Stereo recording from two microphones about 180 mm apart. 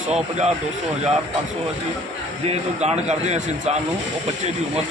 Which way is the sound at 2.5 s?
35° right (ahead or behind).